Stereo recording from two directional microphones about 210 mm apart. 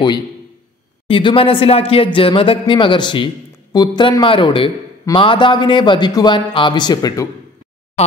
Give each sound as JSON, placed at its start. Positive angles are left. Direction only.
{"t": 1.0, "sound": "a man's voice", "side_deg": 25}